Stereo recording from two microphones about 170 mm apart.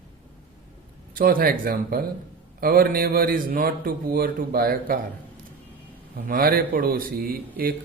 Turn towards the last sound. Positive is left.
turn(degrees=-60)  # may be behind; listen again after turning